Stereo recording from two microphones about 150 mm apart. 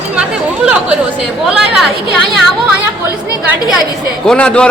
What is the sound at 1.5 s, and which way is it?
Speech, 5° right (ahead or behind).